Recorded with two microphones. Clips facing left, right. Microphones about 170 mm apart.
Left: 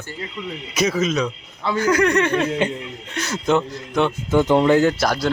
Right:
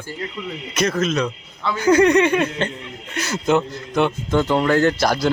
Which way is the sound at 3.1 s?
5° right (ahead or behind).